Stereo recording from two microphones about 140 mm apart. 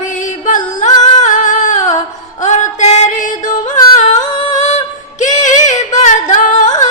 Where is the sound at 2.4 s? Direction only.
60° left (ahead or behind).